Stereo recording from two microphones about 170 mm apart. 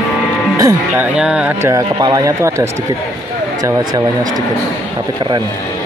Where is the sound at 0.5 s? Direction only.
15° right (ahead or behind).